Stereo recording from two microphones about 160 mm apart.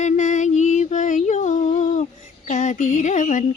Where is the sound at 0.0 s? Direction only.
50° left (ahead or behind).